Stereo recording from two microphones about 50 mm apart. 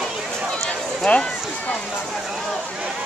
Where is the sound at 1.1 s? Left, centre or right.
Left.